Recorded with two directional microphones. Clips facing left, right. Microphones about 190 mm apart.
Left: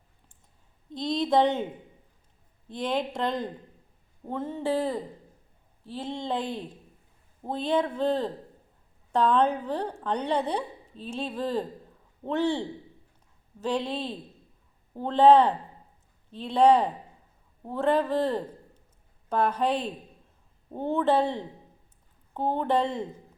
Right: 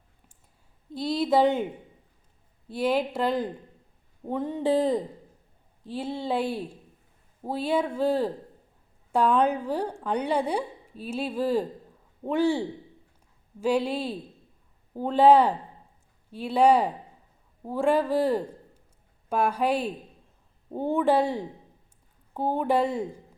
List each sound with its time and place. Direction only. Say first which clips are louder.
0.9 s speech: right 1 dB; 5° right (ahead or behind)
2.6 s a woman's voice: right 4 dB; 10° right (ahead or behind)